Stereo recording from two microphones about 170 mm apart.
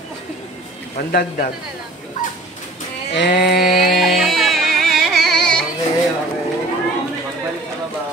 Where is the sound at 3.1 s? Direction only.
75° left (ahead or behind).